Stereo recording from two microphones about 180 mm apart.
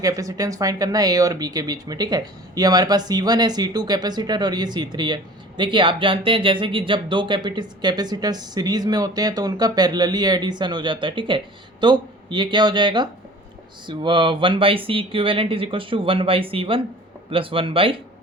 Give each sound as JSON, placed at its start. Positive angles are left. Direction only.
{"t": 0.0, "sound": "speech", "side_deg": -20}